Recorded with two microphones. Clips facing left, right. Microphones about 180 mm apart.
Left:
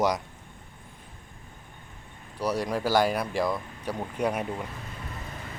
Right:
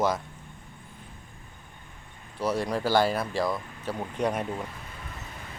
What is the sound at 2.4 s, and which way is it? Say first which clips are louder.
A man's voice: even; 10° left (ahead or behind).